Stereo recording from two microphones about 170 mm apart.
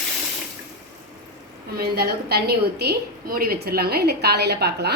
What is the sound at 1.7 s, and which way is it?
A woman's voice, 65° right (ahead or behind).